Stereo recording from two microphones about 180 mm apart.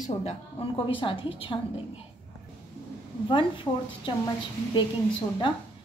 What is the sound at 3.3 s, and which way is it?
Speech, 25° left (ahead or behind).